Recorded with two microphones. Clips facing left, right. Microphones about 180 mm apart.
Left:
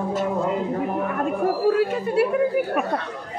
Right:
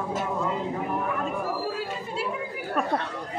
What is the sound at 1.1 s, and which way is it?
Chatter, 55° left (ahead or behind).